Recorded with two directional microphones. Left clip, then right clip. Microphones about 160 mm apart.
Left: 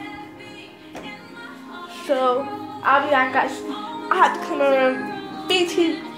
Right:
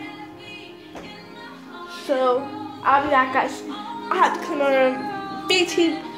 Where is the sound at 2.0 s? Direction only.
15° right (ahead or behind).